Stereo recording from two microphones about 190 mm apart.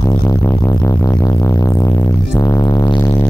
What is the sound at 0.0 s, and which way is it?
Music, 15° left (ahead or behind).